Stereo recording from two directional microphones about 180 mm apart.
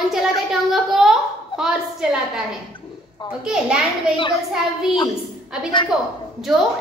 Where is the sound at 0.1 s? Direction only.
Centre (ahead or behind).